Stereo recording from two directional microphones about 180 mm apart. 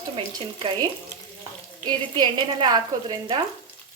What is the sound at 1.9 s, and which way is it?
A woman's voice, 25° right (ahead or behind).